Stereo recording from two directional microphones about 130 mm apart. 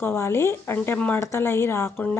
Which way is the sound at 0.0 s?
20° left (ahead or behind).